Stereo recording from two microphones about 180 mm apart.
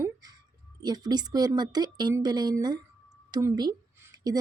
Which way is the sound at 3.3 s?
20° right (ahead or behind).